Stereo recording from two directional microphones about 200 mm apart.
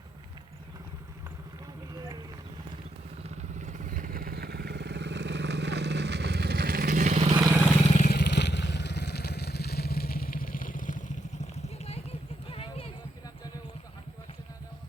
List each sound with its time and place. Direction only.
3.2 s vehicle: 35° right (ahead or behind)
7.9 s vehicle: 35° left (ahead or behind)
8.1 s vehicle: 55° left (ahead or behind); by 12.0 s 30° left (ahead or behind)
12.5 s a sound: 30° left (ahead or behind)